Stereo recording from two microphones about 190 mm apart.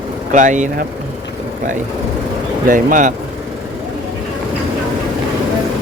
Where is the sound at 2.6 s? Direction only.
45° right (ahead or behind).